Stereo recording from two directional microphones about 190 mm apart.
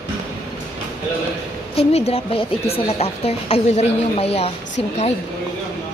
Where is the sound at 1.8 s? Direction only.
35° left (ahead or behind).